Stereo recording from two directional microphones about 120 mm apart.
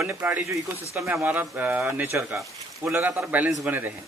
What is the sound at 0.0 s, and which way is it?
Speech, 15° right (ahead or behind).